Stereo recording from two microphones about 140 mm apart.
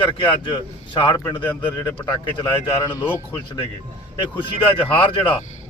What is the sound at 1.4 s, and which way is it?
Speech, 10° left (ahead or behind).